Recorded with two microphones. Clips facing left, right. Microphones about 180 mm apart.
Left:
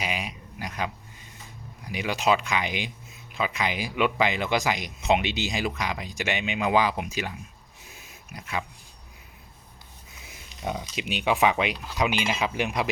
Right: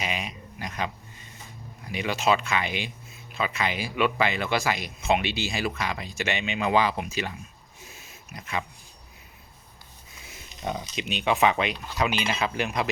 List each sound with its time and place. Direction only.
0.0 s a sound: 10° left (ahead or behind)
1.8 s speech: 10° left (ahead or behind)
10.6 s speech: 10° left (ahead or behind)